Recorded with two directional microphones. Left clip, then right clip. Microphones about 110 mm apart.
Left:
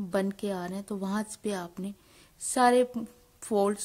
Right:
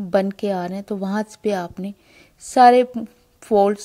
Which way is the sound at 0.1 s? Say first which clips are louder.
Right 11 dB; 35° right (ahead or behind).